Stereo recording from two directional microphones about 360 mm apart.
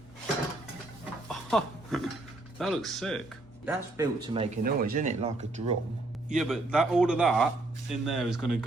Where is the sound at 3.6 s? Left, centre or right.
Centre.